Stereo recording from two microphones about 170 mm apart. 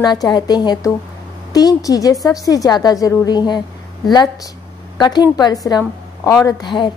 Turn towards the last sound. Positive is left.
turn(degrees=25)  # may be behind; listen again after turning